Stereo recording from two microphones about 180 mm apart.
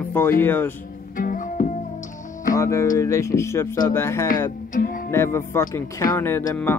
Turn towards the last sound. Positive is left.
turn(degrees=10)  # may be behind; listen again after turning